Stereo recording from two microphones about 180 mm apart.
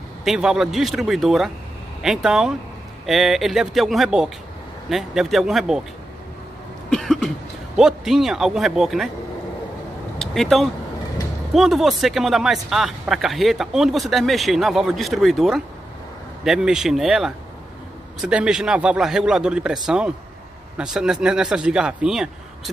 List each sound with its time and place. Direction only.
0.2 s speech: 5° right (ahead or behind)
6.9 s cough: centre (ahead or behind)
7.7 s speech: 5° right (ahead or behind)
10.1 s speech: centre (ahead or behind)